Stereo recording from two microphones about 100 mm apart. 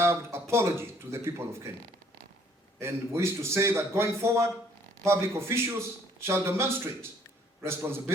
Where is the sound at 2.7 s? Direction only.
25° right (ahead or behind).